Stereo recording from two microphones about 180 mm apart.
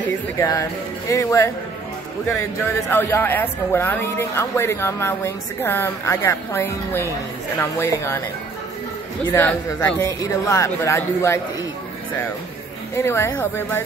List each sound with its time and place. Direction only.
0.4 s speech: 20° left (ahead or behind)
2.9 s speech: 10° left (ahead or behind)
9.4 s speech: 10° left (ahead or behind)
12.9 s speech: 15° left (ahead or behind)